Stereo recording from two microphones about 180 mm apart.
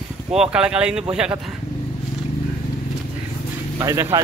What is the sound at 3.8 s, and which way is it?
Speech, 15° right (ahead or behind).